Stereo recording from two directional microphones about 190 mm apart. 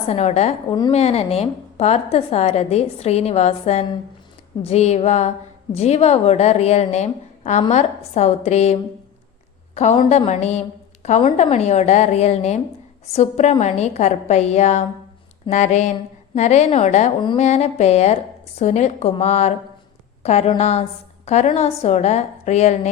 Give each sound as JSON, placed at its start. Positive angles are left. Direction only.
{"t": 0.1, "sound": "a woman's voice", "side_deg": 35}